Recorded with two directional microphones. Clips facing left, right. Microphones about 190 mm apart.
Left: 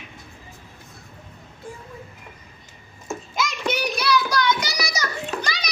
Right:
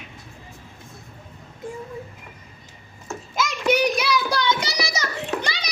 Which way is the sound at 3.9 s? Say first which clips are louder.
Left 1 dB; 25° right (ahead or behind).